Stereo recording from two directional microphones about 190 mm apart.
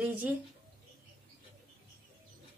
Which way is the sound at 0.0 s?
10° right (ahead or behind).